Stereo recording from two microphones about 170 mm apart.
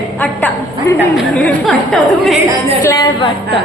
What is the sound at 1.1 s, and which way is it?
Speech, centre (ahead or behind).